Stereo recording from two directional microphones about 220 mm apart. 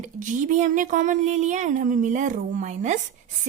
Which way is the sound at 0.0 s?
35° right (ahead or behind).